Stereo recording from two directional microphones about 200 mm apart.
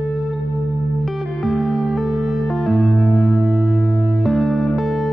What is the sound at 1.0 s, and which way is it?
Music, centre (ahead or behind).